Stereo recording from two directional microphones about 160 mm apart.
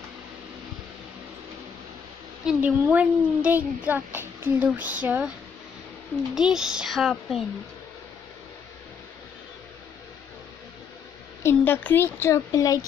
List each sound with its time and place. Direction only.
2.4 s a child's voice: 10° right (ahead or behind)
6.3 s speech: 5° right (ahead or behind)
11.4 s a woman's voice: 15° left (ahead or behind)